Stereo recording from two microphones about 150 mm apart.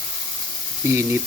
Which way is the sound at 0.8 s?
15° right (ahead or behind).